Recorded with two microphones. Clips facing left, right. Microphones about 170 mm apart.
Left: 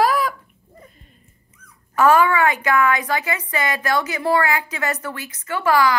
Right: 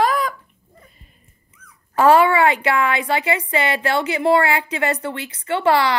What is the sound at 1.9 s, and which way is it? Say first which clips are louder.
A woman's voice: right 2 dB; 30° right (ahead or behind).